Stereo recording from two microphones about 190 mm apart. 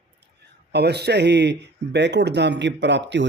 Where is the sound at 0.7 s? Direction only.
60° right (ahead or behind).